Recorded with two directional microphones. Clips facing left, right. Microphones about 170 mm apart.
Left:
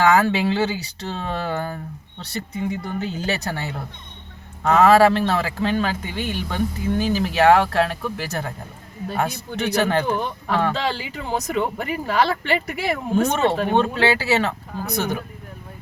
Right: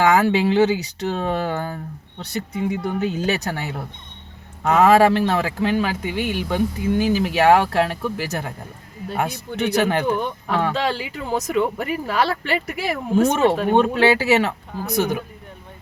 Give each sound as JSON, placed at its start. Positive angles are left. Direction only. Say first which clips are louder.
{"t": 0.0, "sound": "a man's voice", "louder": "right 1 dB", "side_deg": -15}
{"t": 3.0, "sound": "a man's voice", "louder": "right 3 dB", "side_deg": -15}
{"t": 13.9, "sound": "a man's voice", "louder": "right 3 dB", "side_deg": -20}